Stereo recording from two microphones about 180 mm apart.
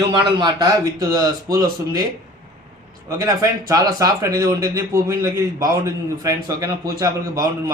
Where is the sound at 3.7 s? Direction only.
20° right (ahead or behind).